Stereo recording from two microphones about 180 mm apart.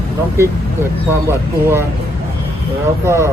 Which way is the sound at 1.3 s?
15° right (ahead or behind).